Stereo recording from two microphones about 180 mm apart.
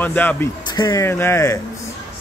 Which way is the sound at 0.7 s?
25° left (ahead or behind).